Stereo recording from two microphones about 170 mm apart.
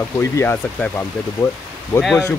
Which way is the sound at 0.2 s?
15° left (ahead or behind).